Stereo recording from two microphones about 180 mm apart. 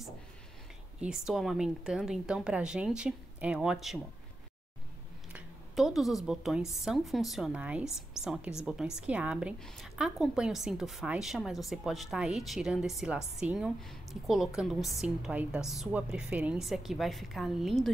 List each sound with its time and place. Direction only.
1.0 s a woman's voice: 5° right (ahead or behind)
5.3 s a woman's voice: centre (ahead or behind)